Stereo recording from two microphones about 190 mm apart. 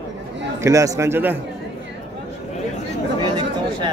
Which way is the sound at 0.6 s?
15° right (ahead or behind).